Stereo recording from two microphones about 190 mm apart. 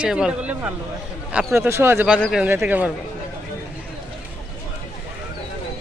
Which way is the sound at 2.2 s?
Centre (ahead or behind).